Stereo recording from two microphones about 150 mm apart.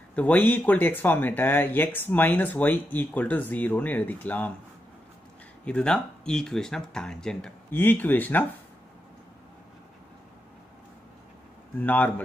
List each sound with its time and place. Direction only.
0.1 s speech: 10° left (ahead or behind)
5.7 s speech: 5° left (ahead or behind)
11.8 s speech: 10° left (ahead or behind)